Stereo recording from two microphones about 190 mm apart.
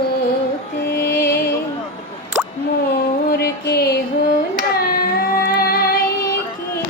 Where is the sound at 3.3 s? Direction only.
55° left (ahead or behind).